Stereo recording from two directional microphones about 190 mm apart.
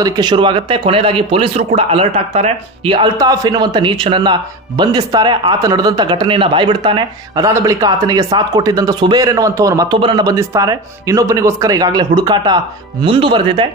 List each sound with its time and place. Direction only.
0.0 s speech: 20° right (ahead or behind)